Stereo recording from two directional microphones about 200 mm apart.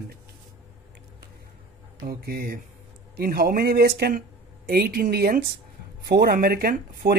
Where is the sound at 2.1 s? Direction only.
50° right (ahead or behind).